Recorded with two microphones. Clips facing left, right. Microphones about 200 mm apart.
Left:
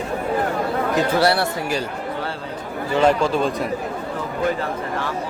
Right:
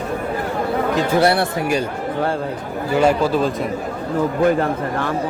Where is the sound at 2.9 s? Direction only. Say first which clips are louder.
Right 1 dB; 5° right (ahead or behind).